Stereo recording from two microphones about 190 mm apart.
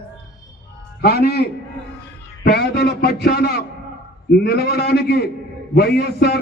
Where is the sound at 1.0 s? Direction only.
55° left (ahead or behind).